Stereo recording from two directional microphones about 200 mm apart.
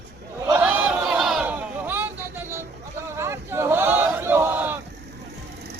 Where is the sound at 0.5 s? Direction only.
10° right (ahead or behind).